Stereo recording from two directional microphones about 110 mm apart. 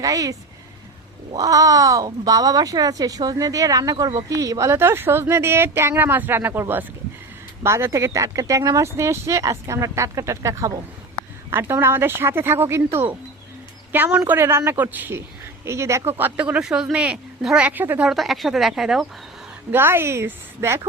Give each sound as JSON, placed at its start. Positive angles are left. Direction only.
{"t": 0.0, "sound": "speech", "side_deg": -35}
{"t": 18.1, "sound": "speech", "side_deg": 0}
{"t": 19.7, "sound": "speech", "side_deg": -20}